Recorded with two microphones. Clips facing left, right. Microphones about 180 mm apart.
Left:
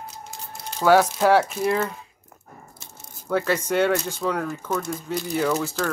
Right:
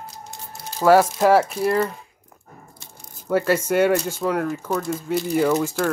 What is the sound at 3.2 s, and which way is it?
Speech, 10° right (ahead or behind).